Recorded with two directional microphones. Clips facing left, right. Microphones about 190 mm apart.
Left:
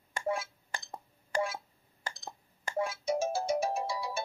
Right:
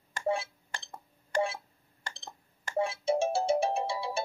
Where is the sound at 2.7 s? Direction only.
30° right (ahead or behind).